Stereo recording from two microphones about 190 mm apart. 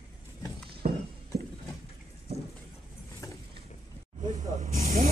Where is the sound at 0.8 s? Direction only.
45° right (ahead or behind).